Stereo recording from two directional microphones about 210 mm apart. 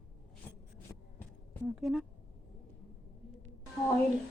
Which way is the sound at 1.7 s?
Centre (ahead or behind).